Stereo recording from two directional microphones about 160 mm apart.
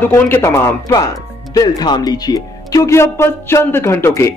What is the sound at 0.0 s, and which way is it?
Speech, 10° left (ahead or behind).